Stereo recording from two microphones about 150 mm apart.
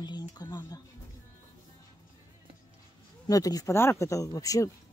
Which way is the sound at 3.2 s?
25° left (ahead or behind).